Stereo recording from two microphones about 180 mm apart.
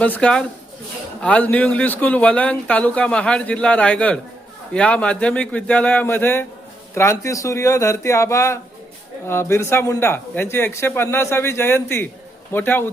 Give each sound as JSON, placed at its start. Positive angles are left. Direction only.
{"t": 0.0, "sound": "speech", "side_deg": 5}